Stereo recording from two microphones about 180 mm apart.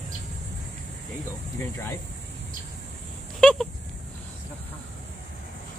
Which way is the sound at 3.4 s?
Centre (ahead or behind).